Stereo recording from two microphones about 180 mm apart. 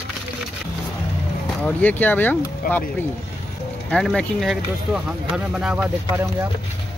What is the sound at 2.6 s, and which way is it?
Speech, 50° left (ahead or behind).